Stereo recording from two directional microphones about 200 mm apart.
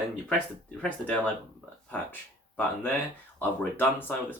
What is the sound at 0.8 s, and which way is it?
Speech, 5° left (ahead or behind).